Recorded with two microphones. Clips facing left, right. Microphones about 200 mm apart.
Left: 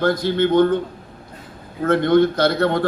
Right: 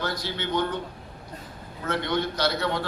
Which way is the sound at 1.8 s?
50° left (ahead or behind).